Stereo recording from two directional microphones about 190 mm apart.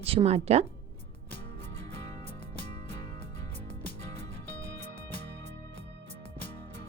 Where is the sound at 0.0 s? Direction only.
30° right (ahead or behind).